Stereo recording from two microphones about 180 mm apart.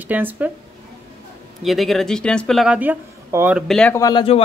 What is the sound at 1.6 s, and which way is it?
Speech, centre (ahead or behind).